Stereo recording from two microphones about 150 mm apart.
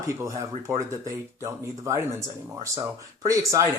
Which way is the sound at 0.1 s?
20° right (ahead or behind).